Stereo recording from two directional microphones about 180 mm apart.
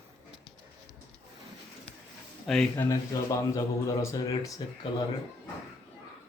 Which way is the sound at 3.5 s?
15° left (ahead or behind).